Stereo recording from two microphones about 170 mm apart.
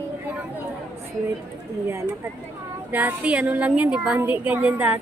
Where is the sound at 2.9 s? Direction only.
10° right (ahead or behind).